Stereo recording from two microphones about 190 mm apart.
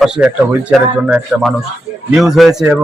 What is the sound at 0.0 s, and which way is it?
A man's voice, 5° right (ahead or behind).